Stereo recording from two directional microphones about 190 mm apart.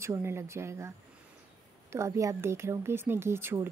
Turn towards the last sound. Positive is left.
turn(degrees=-15)  # may be behind; listen again after turning